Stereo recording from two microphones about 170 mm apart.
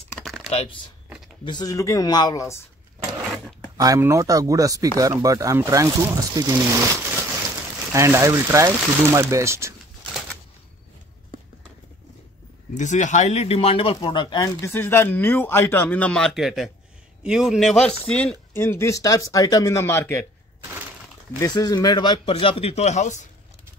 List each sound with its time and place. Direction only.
0.2 s typing: centre (ahead or behind)
0.5 s speech: 35° left (ahead or behind); by 2.6 s 20° left (ahead or behind)
3.7 s speech: 20° right (ahead or behind)
12.7 s a man's voice: 45° left (ahead or behind); by 20.2 s 15° left (ahead or behind)
21.4 s a man's voice: 20° left (ahead or behind); by 23.2 s 45° left (ahead or behind)